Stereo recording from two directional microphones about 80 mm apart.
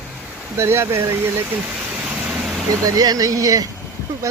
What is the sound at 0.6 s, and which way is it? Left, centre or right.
Speech, right.